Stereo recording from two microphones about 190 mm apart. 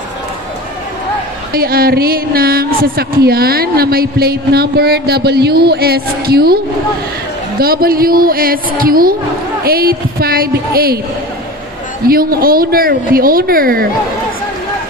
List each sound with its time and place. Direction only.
1.5 s a woman's voice: 50° right (ahead or behind)
12.1 s a woman's voice: 50° right (ahead or behind)